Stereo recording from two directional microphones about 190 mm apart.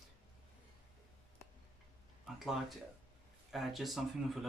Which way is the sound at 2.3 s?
Centre (ahead or behind).